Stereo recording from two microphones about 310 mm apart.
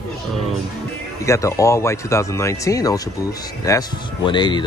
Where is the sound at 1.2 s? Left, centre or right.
Centre.